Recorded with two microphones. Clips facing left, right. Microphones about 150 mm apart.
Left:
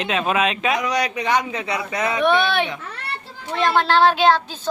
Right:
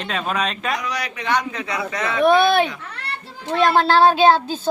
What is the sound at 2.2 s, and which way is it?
Speech, 35° right (ahead or behind).